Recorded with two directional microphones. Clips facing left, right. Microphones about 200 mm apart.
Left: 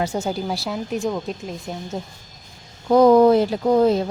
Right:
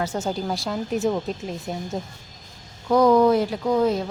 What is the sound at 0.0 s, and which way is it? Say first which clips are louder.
Speech: left 2 dB; 10° left (ahead or behind).